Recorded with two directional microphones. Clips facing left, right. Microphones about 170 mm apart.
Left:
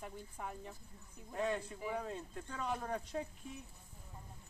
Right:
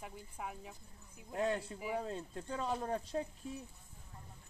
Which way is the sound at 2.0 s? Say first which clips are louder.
Right 2 dB; 30° right (ahead or behind).